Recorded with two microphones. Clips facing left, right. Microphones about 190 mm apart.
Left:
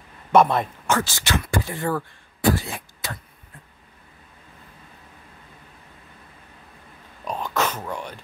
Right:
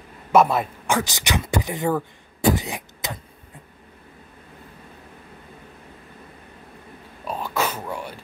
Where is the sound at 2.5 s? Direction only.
15° right (ahead or behind).